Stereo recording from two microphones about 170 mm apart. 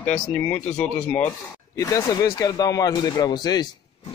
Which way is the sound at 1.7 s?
20° left (ahead or behind).